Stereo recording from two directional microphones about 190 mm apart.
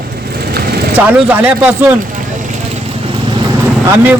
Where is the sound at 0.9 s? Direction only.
10° right (ahead or behind).